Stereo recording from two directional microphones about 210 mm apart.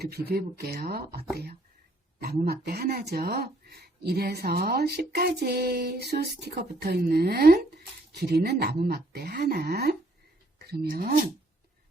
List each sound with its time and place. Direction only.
0.0 s speech: 50° right (ahead or behind)